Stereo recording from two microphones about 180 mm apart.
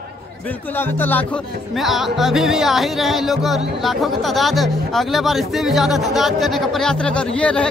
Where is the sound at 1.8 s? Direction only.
Centre (ahead or behind).